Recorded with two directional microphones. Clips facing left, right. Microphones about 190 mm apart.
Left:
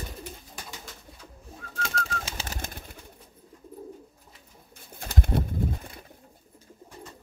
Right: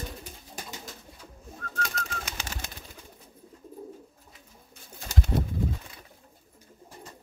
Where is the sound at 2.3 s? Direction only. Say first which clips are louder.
Left 2 dB; 30° left (ahead or behind).